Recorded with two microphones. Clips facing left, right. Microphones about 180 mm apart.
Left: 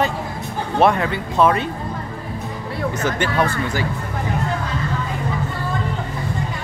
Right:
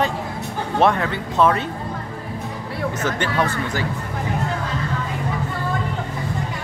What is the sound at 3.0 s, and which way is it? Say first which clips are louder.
Speech: left 2 dB; 10° left (ahead or behind).